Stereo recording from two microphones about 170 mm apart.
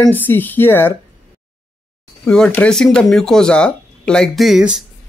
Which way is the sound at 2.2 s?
5° left (ahead or behind).